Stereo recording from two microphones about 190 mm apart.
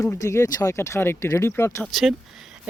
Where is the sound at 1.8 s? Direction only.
Centre (ahead or behind).